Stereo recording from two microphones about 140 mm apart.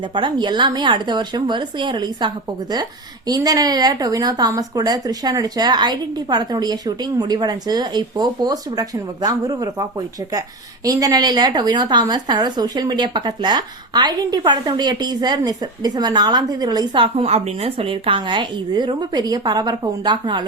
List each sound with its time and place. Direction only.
0.1 s a woman's voice: 35° right (ahead or behind)
10.8 s a woman's voice: 25° right (ahead or behind)